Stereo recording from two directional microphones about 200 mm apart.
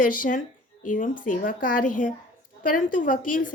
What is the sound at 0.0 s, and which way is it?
A woman's voice, 45° left (ahead or behind).